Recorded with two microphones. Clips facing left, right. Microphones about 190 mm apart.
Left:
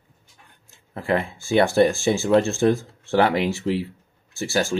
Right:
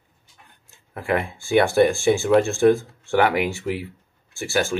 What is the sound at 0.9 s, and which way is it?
Speech, 30° left (ahead or behind).